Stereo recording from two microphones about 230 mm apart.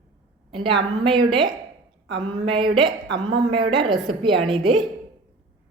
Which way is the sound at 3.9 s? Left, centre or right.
Centre.